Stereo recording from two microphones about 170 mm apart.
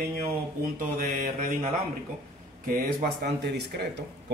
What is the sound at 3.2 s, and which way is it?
Speech, 80° right.